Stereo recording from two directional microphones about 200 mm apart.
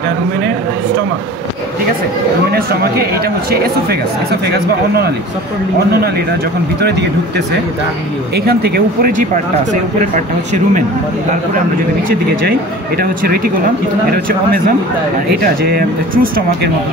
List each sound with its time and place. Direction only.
2.5 s speech: 50° right (ahead or behind)
4.5 s speech: 50° right (ahead or behind)
6.8 s speech: 55° right (ahead or behind)
8.5 s speech: 50° right (ahead or behind)
12.1 s speech: 50° right (ahead or behind)
15.6 s speech: 50° right (ahead or behind)